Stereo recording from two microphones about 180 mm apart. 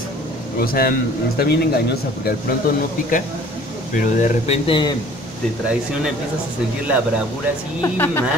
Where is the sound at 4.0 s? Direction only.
45° left (ahead or behind).